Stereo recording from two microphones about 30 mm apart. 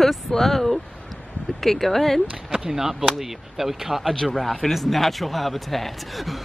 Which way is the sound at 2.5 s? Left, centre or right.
Centre.